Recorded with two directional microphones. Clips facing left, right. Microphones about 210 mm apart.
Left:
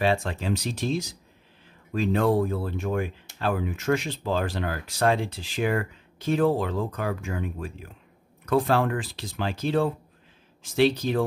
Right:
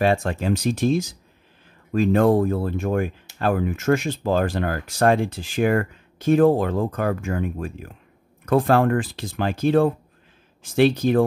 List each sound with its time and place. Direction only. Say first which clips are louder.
0.0 s speech: right 4 dB; 50° right (ahead or behind)